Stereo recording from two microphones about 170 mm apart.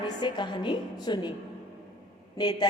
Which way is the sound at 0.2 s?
25° left (ahead or behind).